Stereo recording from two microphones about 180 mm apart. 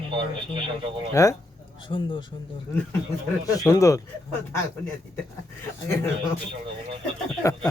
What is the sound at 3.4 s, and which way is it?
Speech, 20° left (ahead or behind).